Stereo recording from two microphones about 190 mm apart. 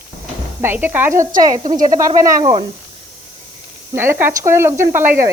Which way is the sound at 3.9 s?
15° right (ahead or behind).